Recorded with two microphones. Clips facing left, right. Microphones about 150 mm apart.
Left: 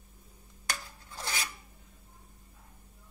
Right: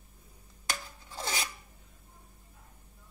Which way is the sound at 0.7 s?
25° right (ahead or behind).